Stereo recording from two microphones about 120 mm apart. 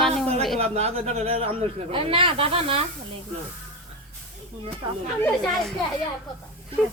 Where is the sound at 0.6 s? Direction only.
60° right (ahead or behind).